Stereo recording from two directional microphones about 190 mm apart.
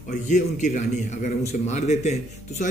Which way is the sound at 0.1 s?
40° left (ahead or behind).